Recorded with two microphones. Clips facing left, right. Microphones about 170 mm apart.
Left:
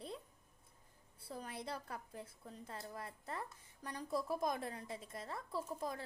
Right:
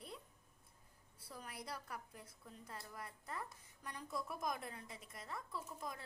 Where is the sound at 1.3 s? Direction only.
30° left (ahead or behind).